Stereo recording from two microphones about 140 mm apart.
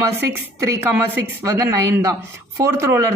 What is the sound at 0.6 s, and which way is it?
Speech, 15° right (ahead or behind).